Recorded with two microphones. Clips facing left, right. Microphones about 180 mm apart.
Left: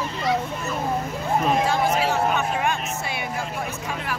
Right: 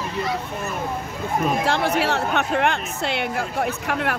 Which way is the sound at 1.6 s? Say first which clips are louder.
Right 1 dB; 70° right (ahead or behind).